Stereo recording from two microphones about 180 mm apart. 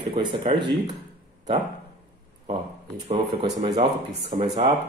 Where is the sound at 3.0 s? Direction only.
30° right (ahead or behind).